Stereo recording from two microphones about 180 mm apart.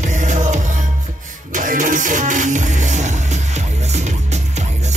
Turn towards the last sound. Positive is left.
turn(degrees=-40)  # may be behind; listen again after turning